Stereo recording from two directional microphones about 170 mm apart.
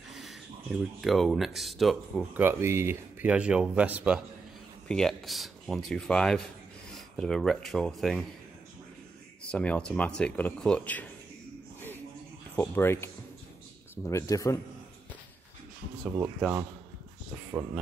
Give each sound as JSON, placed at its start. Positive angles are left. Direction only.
{"t": 0.1, "sound": "speech", "side_deg": 0}
{"t": 2.3, "sound": "speech", "side_deg": -15}
{"t": 4.8, "sound": "speech", "side_deg": 5}
{"t": 9.5, "sound": "speech", "side_deg": 5}
{"t": 12.5, "sound": "speech", "side_deg": 15}
{"t": 16.2, "sound": "speech", "side_deg": -5}